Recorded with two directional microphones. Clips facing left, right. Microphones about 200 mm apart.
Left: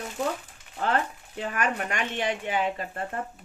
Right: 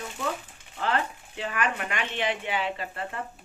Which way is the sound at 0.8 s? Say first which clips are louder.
Left 1 dB; 45° left (ahead or behind).